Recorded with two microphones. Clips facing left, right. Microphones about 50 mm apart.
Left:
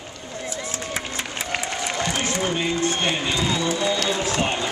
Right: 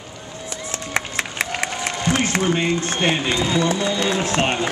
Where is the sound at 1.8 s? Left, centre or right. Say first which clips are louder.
Right 3 dB; centre.